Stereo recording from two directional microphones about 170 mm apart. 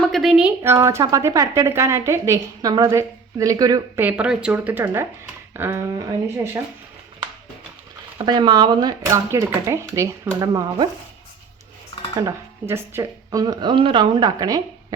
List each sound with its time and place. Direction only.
0.1 s a woman's voice: centre (ahead or behind); by 4.0 s 20° right (ahead or behind)
4.0 s a woman's voice: 5° right (ahead or behind)
8.2 s a woman's voice: 25° right (ahead or behind)
12.2 s speech: 15° right (ahead or behind)